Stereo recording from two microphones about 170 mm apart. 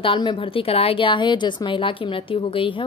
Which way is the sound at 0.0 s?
30° left (ahead or behind).